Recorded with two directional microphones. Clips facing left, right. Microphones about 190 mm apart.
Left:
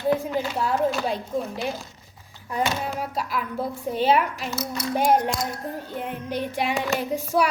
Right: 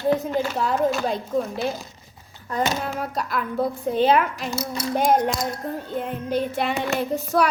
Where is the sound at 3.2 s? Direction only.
10° left (ahead or behind).